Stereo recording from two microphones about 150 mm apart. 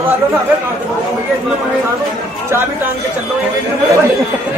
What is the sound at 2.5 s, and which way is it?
Speech, 15° right (ahead or behind).